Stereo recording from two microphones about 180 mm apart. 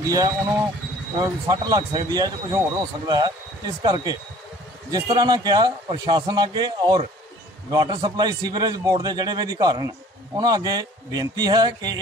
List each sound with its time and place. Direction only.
0.0 s speech: 20° right (ahead or behind)